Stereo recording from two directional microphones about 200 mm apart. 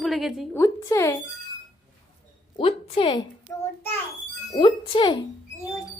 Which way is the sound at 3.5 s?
10° left (ahead or behind).